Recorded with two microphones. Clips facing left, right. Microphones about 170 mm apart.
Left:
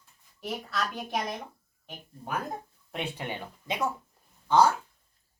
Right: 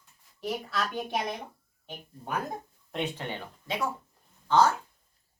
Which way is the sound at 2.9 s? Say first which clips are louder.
Right 1 dB; 10° left (ahead or behind).